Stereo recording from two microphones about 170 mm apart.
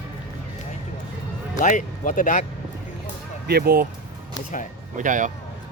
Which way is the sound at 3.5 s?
65° right (ahead or behind).